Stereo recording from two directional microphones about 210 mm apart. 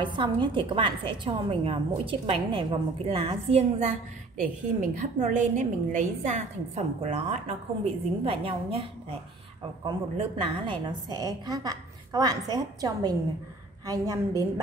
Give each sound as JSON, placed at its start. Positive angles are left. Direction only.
{"t": 0.0, "sound": "a woman's voice", "side_deg": -25}
{"t": 4.9, "sound": "a woman's voice", "side_deg": -35}
{"t": 9.8, "sound": "a woman's voice", "side_deg": -25}